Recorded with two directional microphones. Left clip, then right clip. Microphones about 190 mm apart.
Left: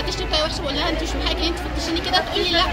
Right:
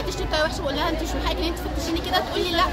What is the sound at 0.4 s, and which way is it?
Speech, 15° right (ahead or behind).